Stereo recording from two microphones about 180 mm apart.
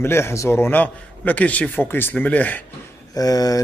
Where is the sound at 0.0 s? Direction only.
15° left (ahead or behind).